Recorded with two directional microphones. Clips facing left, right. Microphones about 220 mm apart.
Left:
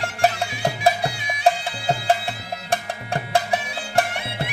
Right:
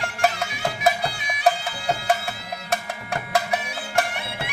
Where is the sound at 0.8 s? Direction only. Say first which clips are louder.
Left 1 dB; 30° left (ahead or behind).